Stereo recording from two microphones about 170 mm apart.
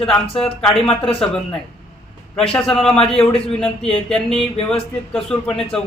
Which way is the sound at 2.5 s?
5° left (ahead or behind).